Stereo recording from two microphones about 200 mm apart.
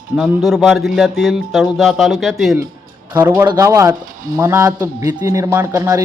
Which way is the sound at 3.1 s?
20° right (ahead or behind).